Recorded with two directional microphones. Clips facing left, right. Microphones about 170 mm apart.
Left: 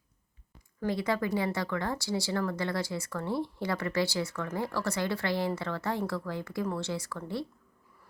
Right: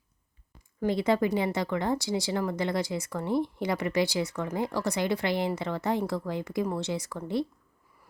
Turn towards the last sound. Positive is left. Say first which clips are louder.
# right 5 dB
turn(degrees=-20)  # may be behind; listen again after turning